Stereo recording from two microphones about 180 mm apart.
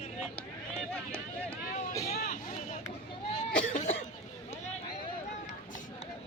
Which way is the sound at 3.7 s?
40° left (ahead or behind).